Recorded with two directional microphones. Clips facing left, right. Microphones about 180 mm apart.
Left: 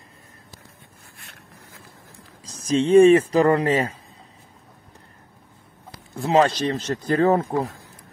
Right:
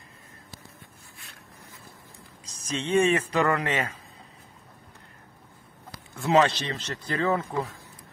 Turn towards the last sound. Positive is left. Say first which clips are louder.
# left 7 dB
turn(degrees=40)  # may be behind; listen again after turning